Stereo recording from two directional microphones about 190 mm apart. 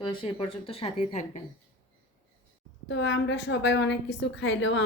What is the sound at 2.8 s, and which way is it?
A woman's voice, 70° left (ahead or behind).